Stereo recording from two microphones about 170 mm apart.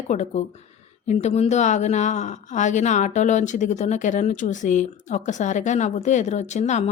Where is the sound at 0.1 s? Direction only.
45° left (ahead or behind).